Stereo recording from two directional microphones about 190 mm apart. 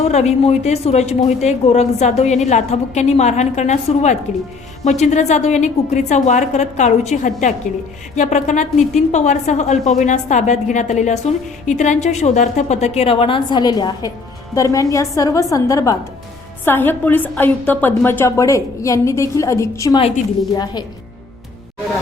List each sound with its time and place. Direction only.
0.0 s a woman's voice: 35° left (ahead or behind); by 20.0 s 15° left (ahead or behind)